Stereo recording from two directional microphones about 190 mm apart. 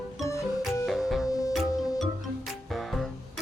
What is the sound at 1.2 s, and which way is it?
Music, 20° left (ahead or behind).